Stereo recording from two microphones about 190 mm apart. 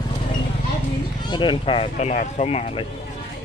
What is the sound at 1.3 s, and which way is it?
Speech, 25° left (ahead or behind).